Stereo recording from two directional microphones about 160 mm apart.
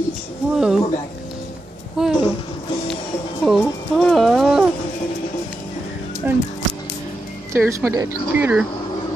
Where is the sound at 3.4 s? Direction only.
Centre (ahead or behind).